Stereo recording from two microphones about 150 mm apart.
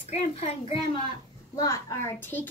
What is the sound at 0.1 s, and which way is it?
Speech, 45° left (ahead or behind).